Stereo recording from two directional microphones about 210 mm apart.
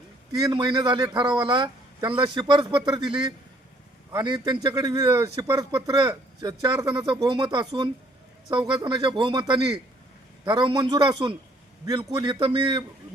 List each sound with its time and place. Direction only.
0.3 s a man's voice: 20° right (ahead or behind)
4.1 s a man's voice: 20° right (ahead or behind)